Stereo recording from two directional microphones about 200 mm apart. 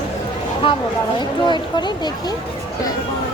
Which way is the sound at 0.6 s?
25° left (ahead or behind).